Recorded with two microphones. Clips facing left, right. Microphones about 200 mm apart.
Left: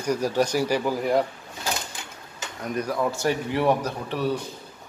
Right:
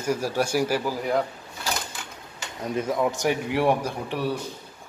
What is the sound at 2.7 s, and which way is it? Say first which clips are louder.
A man's voice: right 1 dB; 20° right (ahead or behind).